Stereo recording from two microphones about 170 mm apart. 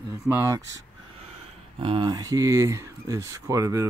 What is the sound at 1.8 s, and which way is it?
Speech, 30° right (ahead or behind).